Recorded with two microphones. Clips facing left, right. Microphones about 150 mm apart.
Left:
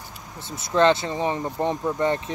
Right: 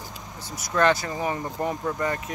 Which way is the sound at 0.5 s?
25° left (ahead or behind).